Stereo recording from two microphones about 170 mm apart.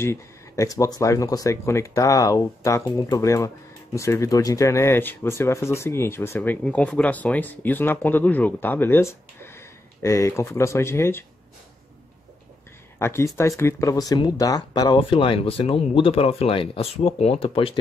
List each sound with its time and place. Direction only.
0.0 s speech: 15° left (ahead or behind)
13.0 s speech: 15° left (ahead or behind); by 17.7 s 35° left (ahead or behind)